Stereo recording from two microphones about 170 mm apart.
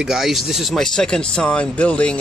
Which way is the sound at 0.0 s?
Centre (ahead or behind).